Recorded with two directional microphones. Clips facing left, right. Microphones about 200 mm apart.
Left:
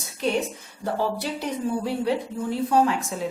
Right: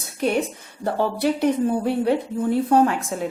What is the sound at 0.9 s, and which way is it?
A woman's voice, 60° right (ahead or behind).